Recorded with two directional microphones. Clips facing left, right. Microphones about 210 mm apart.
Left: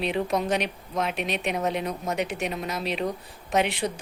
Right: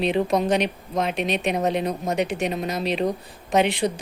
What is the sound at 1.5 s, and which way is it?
Speech, 35° right (ahead or behind).